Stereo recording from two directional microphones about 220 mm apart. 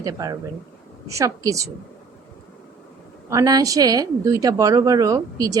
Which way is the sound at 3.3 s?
15° right (ahead or behind).